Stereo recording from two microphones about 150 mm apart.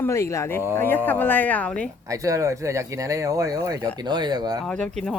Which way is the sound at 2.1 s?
20° right (ahead or behind).